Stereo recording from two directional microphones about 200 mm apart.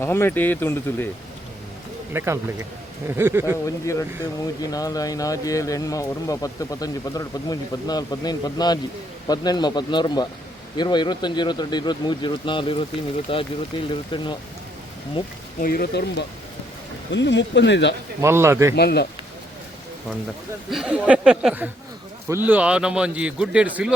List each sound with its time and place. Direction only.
0.0 s speech: 10° left (ahead or behind)
2.1 s speech: 15° right (ahead or behind)
4.6 s speech: 20° left (ahead or behind)
15.6 s speech: 50° left (ahead or behind)
18.2 s speech: 15° right (ahead or behind)
18.8 s speech: 55° left (ahead or behind)
20.7 s a man's voice: 5° right (ahead or behind)